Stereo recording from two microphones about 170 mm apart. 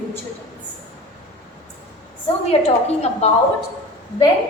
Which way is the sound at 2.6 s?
40° left (ahead or behind).